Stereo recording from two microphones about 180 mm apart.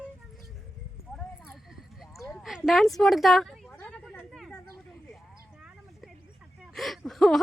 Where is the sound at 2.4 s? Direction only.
Centre (ahead or behind).